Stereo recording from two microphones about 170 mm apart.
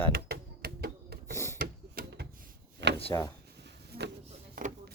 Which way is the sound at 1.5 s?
65° right (ahead or behind).